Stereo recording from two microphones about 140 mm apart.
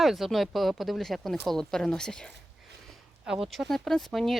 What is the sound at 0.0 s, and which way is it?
Speech, centre (ahead or behind).